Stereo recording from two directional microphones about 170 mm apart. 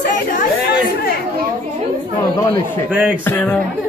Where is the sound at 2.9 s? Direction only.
5° right (ahead or behind).